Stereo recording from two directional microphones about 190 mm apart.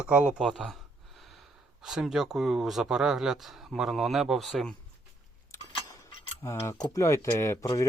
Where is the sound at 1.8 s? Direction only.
Centre (ahead or behind).